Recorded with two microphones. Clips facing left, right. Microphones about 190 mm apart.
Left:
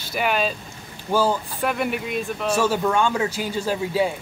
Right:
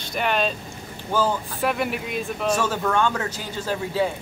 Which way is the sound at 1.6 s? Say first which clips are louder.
Right 1 dB; centre (ahead or behind).